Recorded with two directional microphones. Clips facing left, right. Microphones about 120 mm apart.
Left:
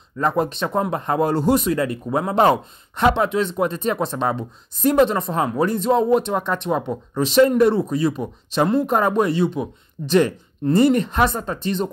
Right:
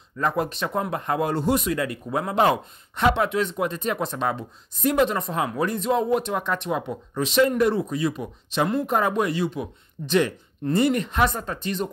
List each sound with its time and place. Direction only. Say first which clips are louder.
0.2 s speech: left 4 dB; 25° left (ahead or behind)